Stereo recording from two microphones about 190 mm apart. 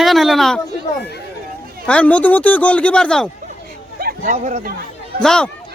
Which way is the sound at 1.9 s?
5° left (ahead or behind).